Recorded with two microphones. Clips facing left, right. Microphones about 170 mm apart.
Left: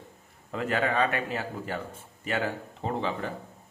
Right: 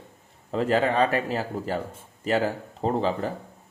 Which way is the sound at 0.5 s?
30° right (ahead or behind).